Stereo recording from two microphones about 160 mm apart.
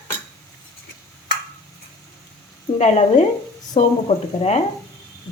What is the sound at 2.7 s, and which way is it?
Cutlery, 45° left (ahead or behind).